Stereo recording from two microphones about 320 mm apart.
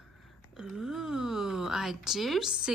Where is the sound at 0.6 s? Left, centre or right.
Centre.